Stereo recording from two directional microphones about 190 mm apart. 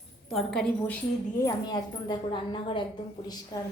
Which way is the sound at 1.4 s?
20° left (ahead or behind).